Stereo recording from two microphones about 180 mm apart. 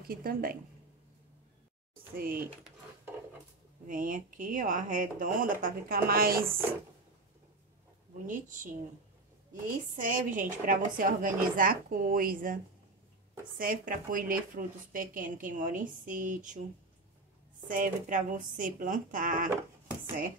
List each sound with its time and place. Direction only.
0.0 s speech: 55° right (ahead or behind)
2.1 s speech: 55° right (ahead or behind)
3.8 s speech: 50° right (ahead or behind)
8.3 s speech: 45° right (ahead or behind)
13.6 s speech: 50° right (ahead or behind)
17.6 s speech: 50° right (ahead or behind)